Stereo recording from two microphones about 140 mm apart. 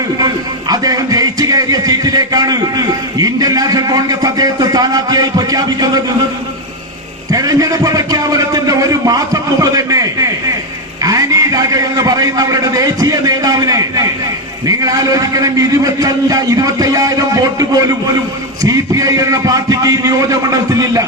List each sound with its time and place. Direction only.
0.7 s a man's voice: 25° right (ahead or behind)
7.3 s a man's voice: 25° right (ahead or behind)